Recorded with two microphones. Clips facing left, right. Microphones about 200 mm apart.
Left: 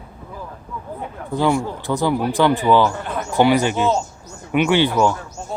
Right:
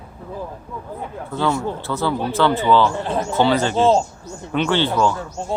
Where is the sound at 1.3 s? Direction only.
15° left (ahead or behind).